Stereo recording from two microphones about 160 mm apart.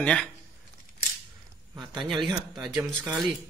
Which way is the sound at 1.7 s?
25° right (ahead or behind).